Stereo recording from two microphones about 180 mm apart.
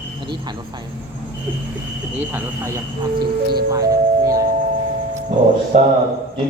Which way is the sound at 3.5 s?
20° right (ahead or behind).